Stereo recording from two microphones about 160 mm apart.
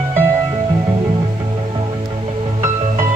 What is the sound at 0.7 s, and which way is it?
Music, 30° right (ahead or behind).